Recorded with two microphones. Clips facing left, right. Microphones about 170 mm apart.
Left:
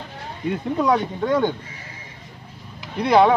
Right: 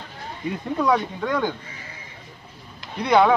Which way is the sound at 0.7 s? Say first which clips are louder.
Left 1 dB; 25° left (ahead or behind).